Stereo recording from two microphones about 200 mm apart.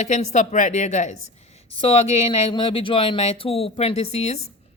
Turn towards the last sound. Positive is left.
turn(degrees=35)  # may be behind; listen again after turning